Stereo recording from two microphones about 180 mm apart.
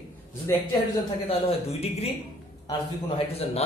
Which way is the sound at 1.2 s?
35° left (ahead or behind).